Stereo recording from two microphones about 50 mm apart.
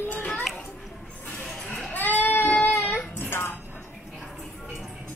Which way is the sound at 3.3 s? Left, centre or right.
Left.